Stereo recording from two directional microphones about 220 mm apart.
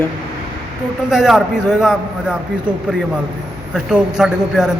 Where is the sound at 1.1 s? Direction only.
Centre (ahead or behind).